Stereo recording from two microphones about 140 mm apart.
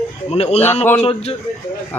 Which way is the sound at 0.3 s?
50° left (ahead or behind).